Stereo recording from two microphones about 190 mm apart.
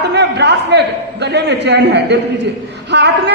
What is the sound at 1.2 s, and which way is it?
A man's voice, 65° right (ahead or behind).